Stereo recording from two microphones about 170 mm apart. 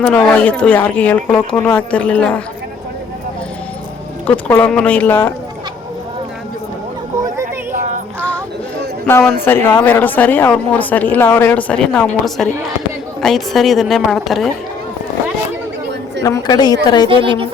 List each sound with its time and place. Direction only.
0.1 s speech: 5° left (ahead or behind)
4.3 s speech: 10° left (ahead or behind)
7.7 s child singing: 50° right (ahead or behind)
9.4 s a woman's voice: 15° left (ahead or behind)
16.2 s a woman's voice: 20° left (ahead or behind)
17.1 s a woman's voice: 30° right (ahead or behind)